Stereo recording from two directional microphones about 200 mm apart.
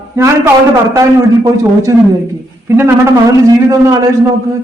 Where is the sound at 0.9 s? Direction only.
15° right (ahead or behind).